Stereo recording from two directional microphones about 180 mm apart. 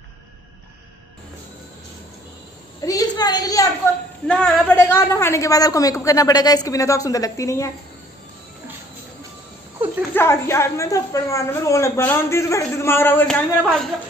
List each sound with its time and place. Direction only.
2.8 s a sound: 20° left (ahead or behind)
4.3 s a man's voice: 5° left (ahead or behind)
10.1 s a woman's voice: 15° left (ahead or behind)